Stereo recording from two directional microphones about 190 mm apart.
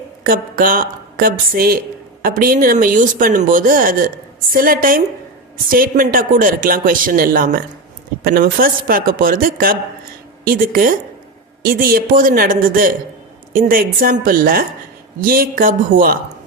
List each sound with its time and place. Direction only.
0.3 s speech: 50° right (ahead or behind)